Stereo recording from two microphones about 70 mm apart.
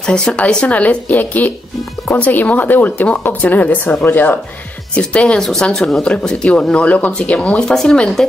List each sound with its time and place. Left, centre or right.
0.0 s speech: centre
4.9 s speech: centre